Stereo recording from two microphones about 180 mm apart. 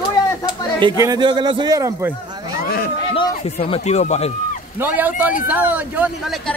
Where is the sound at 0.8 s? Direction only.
20° right (ahead or behind).